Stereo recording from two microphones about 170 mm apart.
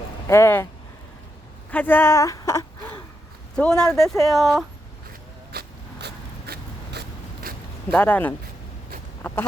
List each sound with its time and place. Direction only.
0.3 s speech: 15° left (ahead or behind)
1.7 s speech: 10° left (ahead or behind)
3.5 s speech: 5° left (ahead or behind)
5.5 s vehicle: 70° right (ahead or behind)
7.5 s zipper: 60° right (ahead or behind)
7.9 s speech: 10° left (ahead or behind)
9.2 s a sound: 15° left (ahead or behind)